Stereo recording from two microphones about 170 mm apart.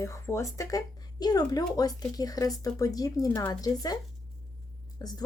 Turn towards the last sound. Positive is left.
turn(degrees=25)  # may be behind; listen again after turning